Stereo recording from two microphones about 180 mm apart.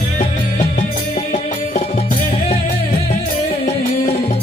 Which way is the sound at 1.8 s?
35° left (ahead or behind).